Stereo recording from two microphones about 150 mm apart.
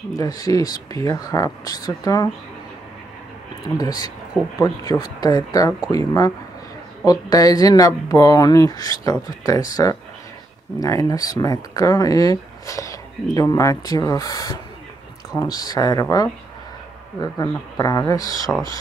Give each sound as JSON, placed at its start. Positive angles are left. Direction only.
{"t": 0.1, "sound": "speech", "side_deg": 25}
{"t": 3.7, "sound": "speech", "side_deg": 25}